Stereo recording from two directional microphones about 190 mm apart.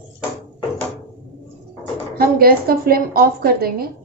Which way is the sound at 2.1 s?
50° right (ahead or behind).